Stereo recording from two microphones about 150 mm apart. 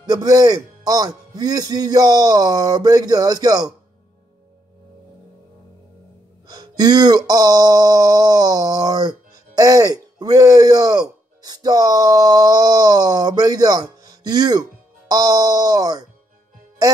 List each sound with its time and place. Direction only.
0.0 s speech: 25° right (ahead or behind)
6.4 s speech: 25° right (ahead or behind)